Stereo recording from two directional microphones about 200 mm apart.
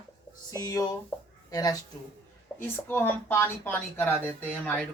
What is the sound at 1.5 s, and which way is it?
A woman's voice, 20° left (ahead or behind).